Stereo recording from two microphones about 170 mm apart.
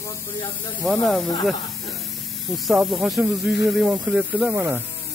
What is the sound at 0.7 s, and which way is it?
Speech, centre (ahead or behind).